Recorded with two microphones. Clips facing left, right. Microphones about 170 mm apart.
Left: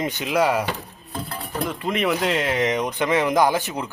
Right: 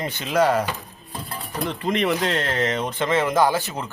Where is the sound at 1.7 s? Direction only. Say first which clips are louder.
Right 1 dB; 5° left (ahead or behind).